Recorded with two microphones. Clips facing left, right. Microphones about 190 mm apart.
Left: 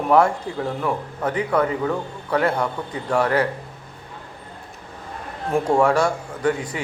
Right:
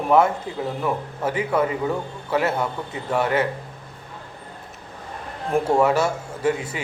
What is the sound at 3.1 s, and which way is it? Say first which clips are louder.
Speech: left 2 dB; 5° right (ahead or behind).